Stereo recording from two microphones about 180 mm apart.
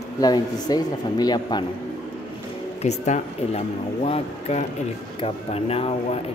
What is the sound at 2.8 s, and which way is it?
Speech, 40° left (ahead or behind).